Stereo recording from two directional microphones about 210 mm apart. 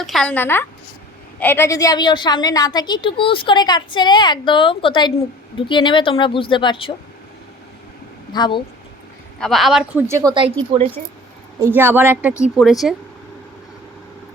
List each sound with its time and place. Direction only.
0.0 s a woman's voice: centre (ahead or behind); by 6.9 s 25° left (ahead or behind)
8.3 s a woman's voice: 20° left (ahead or behind)
9.4 s speech: centre (ahead or behind)
10.1 s a woman's voice: 15° right (ahead or behind)
11.6 s a woman's voice: 10° right (ahead or behind)